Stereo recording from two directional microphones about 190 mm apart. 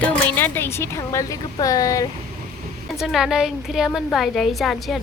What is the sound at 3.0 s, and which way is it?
A woman's voice, centre (ahead or behind).